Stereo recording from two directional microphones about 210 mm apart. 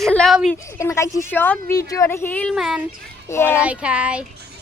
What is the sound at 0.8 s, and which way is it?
A woman's voice, 15° left (ahead or behind).